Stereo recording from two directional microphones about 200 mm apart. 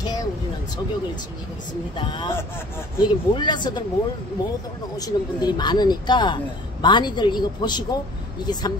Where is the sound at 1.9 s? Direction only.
25° left (ahead or behind).